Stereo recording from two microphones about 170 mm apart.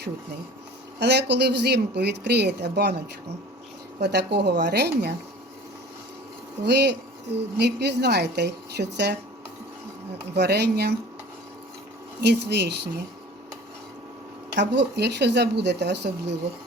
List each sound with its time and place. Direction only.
0.9 s a woman's voice: 85° right
4.0 s a woman's voice: 90° right
6.7 s a woman's voice: 90° right
10.3 s a woman's voice: 80° right
12.2 s a woman's voice: 80° right
14.5 s a woman's voice: 90° right